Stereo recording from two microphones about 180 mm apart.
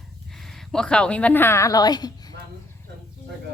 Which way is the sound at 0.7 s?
5° left (ahead or behind).